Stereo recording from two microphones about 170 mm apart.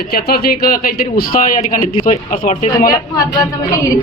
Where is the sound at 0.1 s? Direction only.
65° left (ahead or behind).